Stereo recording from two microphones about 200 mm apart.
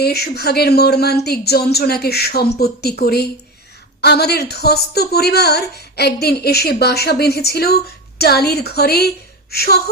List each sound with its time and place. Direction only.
0.0 s a woman's voice: 55° left (ahead or behind)